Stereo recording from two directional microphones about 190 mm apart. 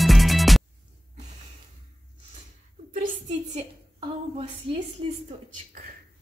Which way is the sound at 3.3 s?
35° right (ahead or behind).